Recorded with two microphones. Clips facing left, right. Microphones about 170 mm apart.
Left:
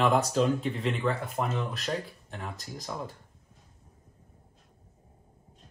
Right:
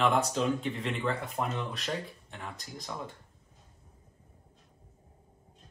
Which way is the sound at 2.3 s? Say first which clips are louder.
Left 3 dB; 35° left (ahead or behind).